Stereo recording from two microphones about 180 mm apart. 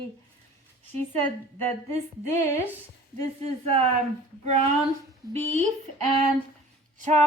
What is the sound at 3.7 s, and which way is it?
Speech, 35° right (ahead or behind).